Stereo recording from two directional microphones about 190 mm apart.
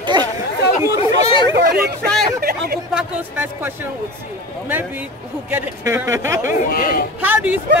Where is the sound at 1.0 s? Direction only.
30° left (ahead or behind).